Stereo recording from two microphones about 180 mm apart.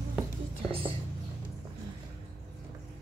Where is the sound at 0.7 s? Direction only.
30° right (ahead or behind).